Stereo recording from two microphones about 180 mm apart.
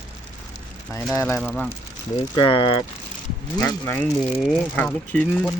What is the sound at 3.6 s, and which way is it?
Speech, 15° left (ahead or behind).